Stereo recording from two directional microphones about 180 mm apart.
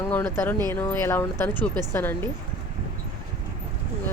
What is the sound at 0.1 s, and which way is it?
Speech, 10° left (ahead or behind).